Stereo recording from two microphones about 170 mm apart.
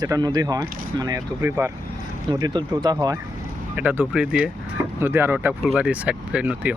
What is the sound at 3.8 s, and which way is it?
Speech, 10° right (ahead or behind).